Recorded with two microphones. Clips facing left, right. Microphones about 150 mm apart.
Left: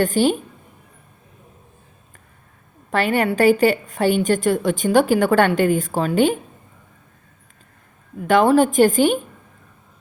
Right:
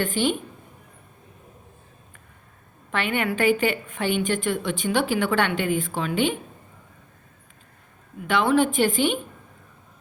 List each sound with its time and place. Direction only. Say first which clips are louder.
0.0 s a woman's voice: left 6 dB; 40° left (ahead or behind)
2.9 s a woman's voice: left 6 dB; 40° left (ahead or behind)
8.3 s a woman's voice: left 6 dB; 40° left (ahead or behind)